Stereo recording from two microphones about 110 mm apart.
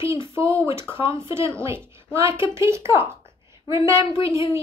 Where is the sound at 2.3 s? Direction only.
50° left (ahead or behind).